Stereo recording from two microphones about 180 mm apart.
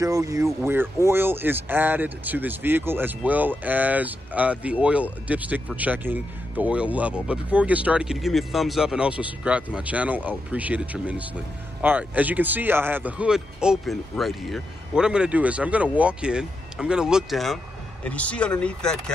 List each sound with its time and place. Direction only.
0.0 s speech: 20° right (ahead or behind); by 19.1 s 5° left (ahead or behind)